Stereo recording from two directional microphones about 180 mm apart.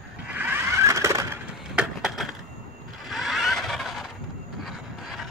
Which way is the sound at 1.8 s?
5° right (ahead or behind).